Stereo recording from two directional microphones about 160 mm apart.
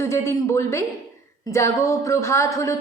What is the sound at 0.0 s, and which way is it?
Speech, 15° left (ahead or behind).